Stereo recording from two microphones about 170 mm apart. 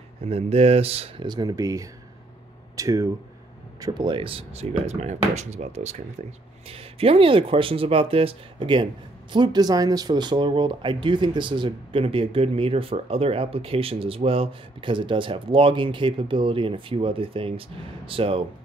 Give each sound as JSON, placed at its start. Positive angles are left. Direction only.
{"t": 0.2, "sound": "speech", "side_deg": -35}